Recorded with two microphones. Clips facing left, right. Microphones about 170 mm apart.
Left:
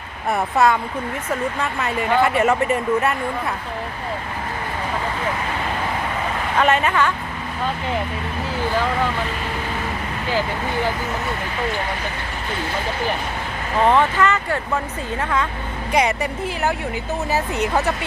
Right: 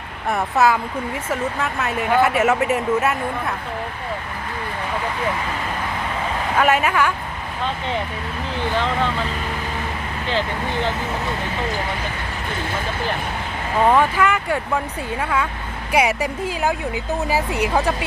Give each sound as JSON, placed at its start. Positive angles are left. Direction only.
{"t": 0.3, "sound": "speech", "side_deg": 0}
{"t": 6.6, "sound": "speech", "side_deg": -10}
{"t": 13.9, "sound": "speech", "side_deg": -10}